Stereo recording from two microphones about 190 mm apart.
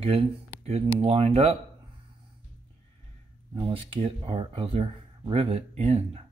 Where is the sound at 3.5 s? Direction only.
30° right (ahead or behind).